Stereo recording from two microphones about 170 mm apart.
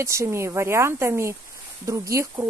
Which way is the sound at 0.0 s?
15° right (ahead or behind).